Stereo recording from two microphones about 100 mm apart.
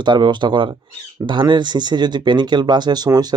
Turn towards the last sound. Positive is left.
turn(degrees=-40)  # may be behind; listen again after turning